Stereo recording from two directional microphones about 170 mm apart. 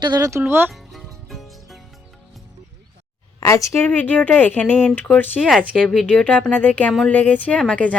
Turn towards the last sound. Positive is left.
turn(degrees=5)  # may be behind; listen again after turning